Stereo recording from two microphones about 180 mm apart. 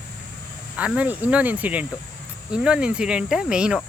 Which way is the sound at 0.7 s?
5° right (ahead or behind).